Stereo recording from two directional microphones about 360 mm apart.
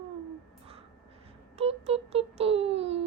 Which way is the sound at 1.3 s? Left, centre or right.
Centre.